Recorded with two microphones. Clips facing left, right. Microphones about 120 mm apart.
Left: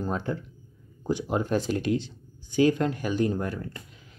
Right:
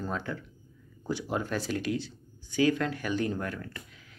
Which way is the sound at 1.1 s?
20° left (ahead or behind).